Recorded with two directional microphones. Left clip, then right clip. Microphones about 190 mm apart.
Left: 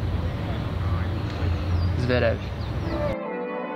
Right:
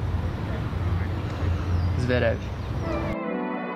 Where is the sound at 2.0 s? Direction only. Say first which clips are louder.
Left 1 dB; centre (ahead or behind).